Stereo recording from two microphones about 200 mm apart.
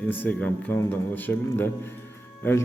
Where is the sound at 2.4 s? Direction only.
10° left (ahead or behind).